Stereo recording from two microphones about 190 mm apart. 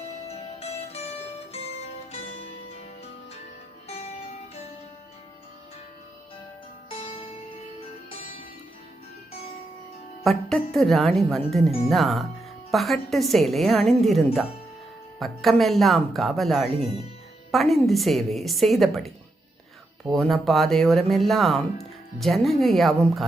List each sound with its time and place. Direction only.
0.3 s music: 35° left (ahead or behind)
7.0 s music: 30° left (ahead or behind)
10.2 s speech: centre (ahead or behind)
15.2 s speech: centre (ahead or behind)
20.1 s speech: centre (ahead or behind)